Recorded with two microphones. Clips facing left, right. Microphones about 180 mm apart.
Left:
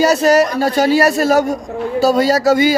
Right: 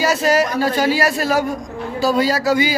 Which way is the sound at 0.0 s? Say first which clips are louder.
Left 5 dB; 40° left (ahead or behind).